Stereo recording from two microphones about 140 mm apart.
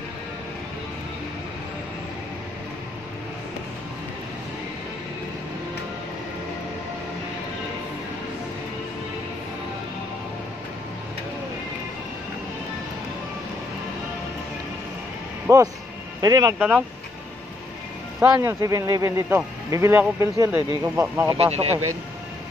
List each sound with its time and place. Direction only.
15.4 s a sound: 25° right (ahead or behind)
16.2 s speech: 30° right (ahead or behind)
16.5 s speech: 10° right (ahead or behind)
18.4 s speech: 20° right (ahead or behind)
21.4 s speech: 45° right (ahead or behind)